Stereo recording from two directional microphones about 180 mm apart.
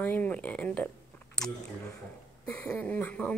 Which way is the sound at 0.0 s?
10° left (ahead or behind).